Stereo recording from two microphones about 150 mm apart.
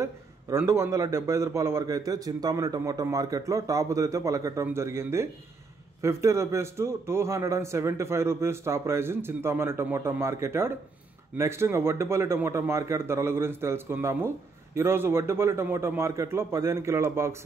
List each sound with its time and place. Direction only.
0.0 s a man's voice: 20° right (ahead or behind)